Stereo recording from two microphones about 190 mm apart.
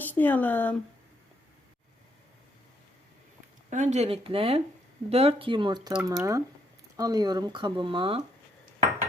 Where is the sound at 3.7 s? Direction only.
40° right (ahead or behind).